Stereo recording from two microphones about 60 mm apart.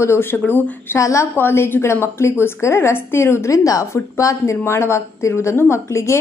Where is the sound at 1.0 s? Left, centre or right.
Left.